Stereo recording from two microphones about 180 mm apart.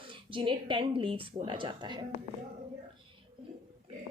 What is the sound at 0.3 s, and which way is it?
A woman's voice, 30° right (ahead or behind).